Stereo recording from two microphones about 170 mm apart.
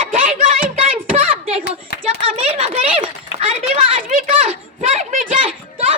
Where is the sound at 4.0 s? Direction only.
55° right (ahead or behind).